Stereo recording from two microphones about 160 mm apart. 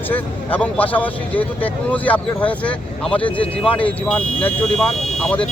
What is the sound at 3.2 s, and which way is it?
Speech, 35° left (ahead or behind).